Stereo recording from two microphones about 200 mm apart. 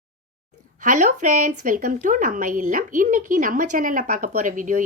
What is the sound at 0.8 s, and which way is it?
Speech, 40° right (ahead or behind).